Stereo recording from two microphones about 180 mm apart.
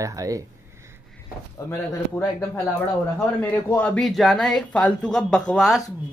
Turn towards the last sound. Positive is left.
turn(degrees=0)  # may be behind; listen again after turning